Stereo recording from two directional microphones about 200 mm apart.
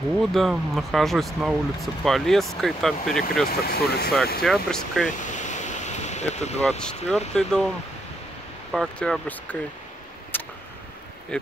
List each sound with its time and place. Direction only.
0.2 s speech: centre (ahead or behind)
3.4 s speech: 50° left (ahead or behind)
4.4 s speech: 5° left (ahead or behind)
5.2 s ocean: 40° left (ahead or behind)
7.3 s speech: 5° left (ahead or behind)
8.7 s speech: 5° left (ahead or behind)
10.3 s a sound: 10° left (ahead or behind)